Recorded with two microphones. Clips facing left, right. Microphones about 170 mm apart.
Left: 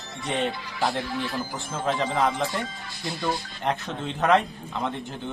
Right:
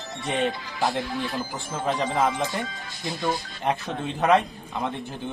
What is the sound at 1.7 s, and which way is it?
Speech, centre (ahead or behind).